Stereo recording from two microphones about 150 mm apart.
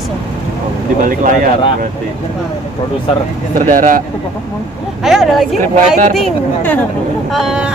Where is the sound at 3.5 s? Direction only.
60° right (ahead or behind).